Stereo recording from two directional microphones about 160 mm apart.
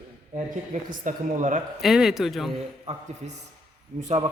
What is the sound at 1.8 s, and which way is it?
Speech, centre (ahead or behind).